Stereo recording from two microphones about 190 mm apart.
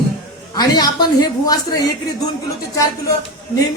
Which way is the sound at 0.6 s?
20° left (ahead or behind).